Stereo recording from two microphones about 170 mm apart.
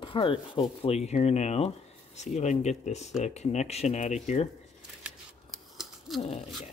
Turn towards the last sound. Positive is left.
turn(degrees=40)  # may be behind; listen again after turning